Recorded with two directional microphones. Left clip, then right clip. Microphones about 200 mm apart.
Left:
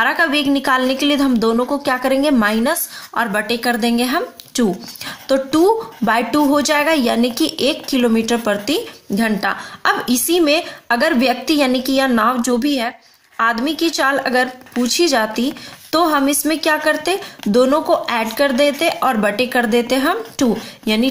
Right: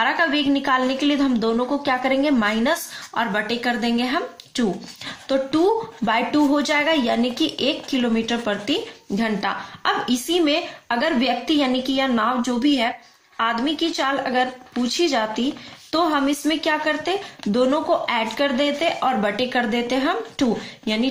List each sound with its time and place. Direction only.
0.0 s speech: 35° left (ahead or behind)